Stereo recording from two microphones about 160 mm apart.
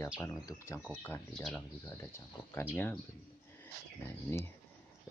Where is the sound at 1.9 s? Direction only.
15° left (ahead or behind).